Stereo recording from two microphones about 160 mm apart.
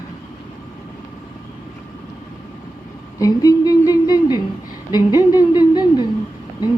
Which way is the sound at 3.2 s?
20° left (ahead or behind).